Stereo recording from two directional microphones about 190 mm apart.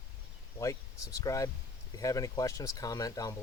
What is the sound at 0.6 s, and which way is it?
Speech, 15° left (ahead or behind).